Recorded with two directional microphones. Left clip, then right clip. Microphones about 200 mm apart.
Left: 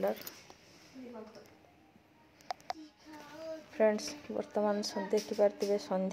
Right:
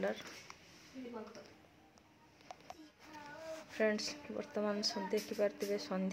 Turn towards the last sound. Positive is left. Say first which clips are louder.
# left 6 dB
turn(degrees=10)  # may be behind; listen again after turning